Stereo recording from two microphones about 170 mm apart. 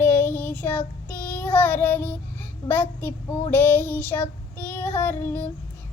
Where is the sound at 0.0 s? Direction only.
10° left (ahead or behind).